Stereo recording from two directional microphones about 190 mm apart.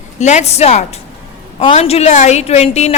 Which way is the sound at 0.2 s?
35° left (ahead or behind).